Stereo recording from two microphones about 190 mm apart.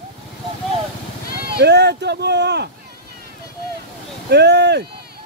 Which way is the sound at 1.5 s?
60° right (ahead or behind).